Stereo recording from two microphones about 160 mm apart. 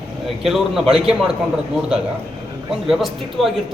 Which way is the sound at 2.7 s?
Centre (ahead or behind).